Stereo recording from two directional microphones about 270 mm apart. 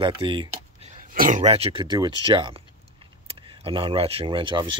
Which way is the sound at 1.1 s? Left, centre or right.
Right.